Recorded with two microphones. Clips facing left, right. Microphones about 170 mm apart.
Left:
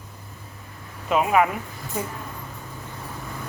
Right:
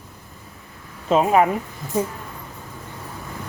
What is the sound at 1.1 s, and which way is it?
Speech, 30° right (ahead or behind).